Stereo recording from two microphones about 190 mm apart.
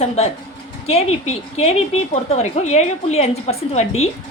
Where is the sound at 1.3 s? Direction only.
35° left (ahead or behind).